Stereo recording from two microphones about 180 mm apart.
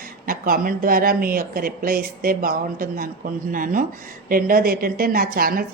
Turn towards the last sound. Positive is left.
turn(degrees=-55)  # may be behind; listen again after turning